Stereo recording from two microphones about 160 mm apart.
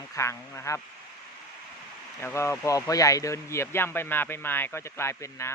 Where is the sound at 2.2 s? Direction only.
15° left (ahead or behind).